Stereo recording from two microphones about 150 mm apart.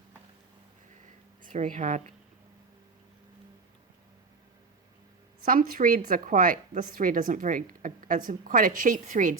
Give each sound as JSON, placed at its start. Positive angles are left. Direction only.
{"t": 1.4, "sound": "speech", "side_deg": -60}
{"t": 5.4, "sound": "a woman's voice", "side_deg": -70}